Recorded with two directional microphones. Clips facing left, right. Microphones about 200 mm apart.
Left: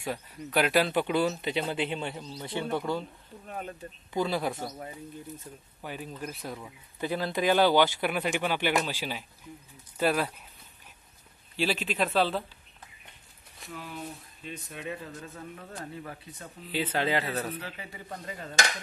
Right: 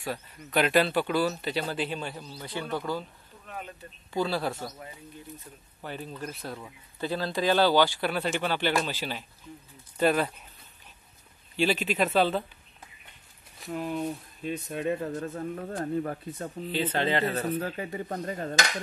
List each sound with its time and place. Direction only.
0.0 s speech: 15° left (ahead or behind)
0.9 s a man's voice: 20° left (ahead or behind)
3.4 s speech: 40° left (ahead or behind)
4.1 s a man's voice: 20° left (ahead or behind)
5.9 s speech: 10° left (ahead or behind)
11.5 s speech: centre (ahead or behind)
13.7 s speech: 45° right (ahead or behind)
16.7 s speech: 10° left (ahead or behind)
17.6 s speech: 50° right (ahead or behind)